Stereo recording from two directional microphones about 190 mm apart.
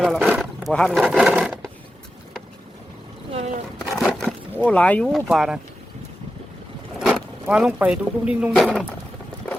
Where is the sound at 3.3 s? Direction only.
35° right (ahead or behind).